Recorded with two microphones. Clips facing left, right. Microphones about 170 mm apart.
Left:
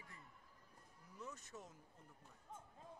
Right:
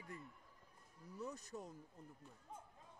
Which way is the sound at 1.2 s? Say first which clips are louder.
Right 5 dB; 35° right (ahead or behind).